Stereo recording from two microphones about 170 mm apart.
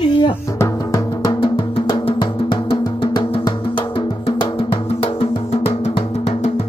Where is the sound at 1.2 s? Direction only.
30° left (ahead or behind).